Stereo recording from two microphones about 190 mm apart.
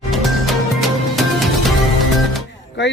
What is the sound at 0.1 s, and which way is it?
Music, centre (ahead or behind).